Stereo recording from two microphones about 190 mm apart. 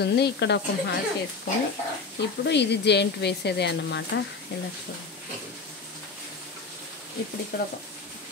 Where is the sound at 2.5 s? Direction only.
65° left (ahead or behind).